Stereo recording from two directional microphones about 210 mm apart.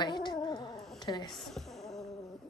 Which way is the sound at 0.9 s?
20° left (ahead or behind).